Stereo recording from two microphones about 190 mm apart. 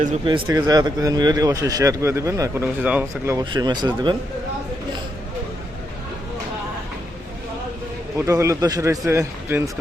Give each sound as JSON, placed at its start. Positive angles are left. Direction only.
{"t": 0.3, "sound": "speech", "side_deg": -20}
{"t": 8.3, "sound": "speech", "side_deg": -15}